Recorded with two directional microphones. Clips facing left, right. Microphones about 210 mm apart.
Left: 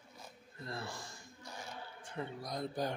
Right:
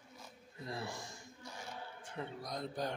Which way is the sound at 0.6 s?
15° right (ahead or behind).